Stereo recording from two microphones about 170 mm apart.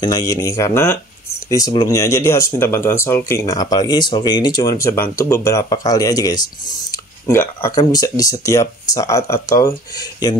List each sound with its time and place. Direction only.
0.0 s speech: 20° left (ahead or behind)